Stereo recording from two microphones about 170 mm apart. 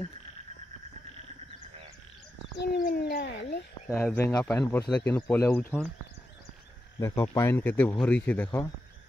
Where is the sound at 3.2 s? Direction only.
90° left.